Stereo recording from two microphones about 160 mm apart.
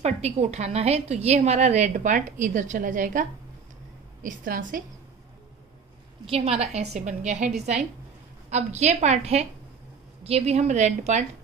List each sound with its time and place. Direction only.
0.0 s a woman's voice: 40° right (ahead or behind)
6.2 s a woman's voice: 35° right (ahead or behind)